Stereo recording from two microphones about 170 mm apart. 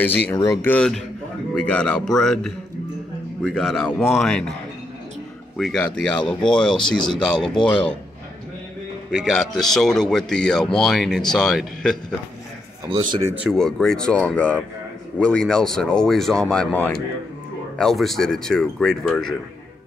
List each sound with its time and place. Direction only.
0.3 s speech: 15° left (ahead or behind)
5.6 s speech: 5° left (ahead or behind)
9.1 s speech: centre (ahead or behind)
12.8 s a man's voice: 25° right (ahead or behind)
13.4 s speech: centre (ahead or behind)